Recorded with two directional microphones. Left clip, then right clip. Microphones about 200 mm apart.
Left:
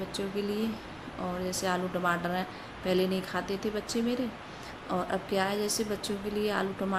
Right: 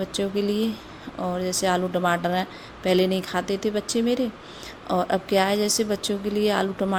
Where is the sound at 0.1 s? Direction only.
45° right (ahead or behind).